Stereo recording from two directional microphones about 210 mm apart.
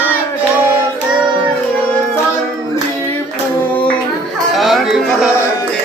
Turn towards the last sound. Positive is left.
turn(degrees=0)  # may be behind; listen again after turning